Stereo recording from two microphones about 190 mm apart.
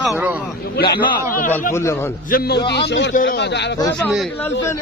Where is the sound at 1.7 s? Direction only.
15° left (ahead or behind).